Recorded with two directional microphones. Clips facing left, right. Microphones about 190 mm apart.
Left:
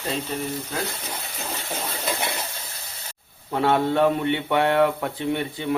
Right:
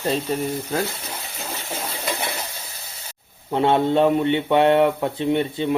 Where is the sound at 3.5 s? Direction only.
20° right (ahead or behind).